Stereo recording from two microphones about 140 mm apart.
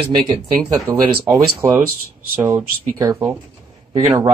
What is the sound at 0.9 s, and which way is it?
Speech, 25° right (ahead or behind).